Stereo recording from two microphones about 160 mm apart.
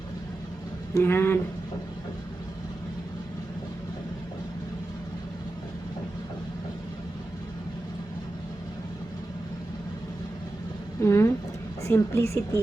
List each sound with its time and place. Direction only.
0.9 s speech: 15° left (ahead or behind)
11.0 s a sound: 15° left (ahead or behind)
11.8 s a woman's voice: 15° left (ahead or behind)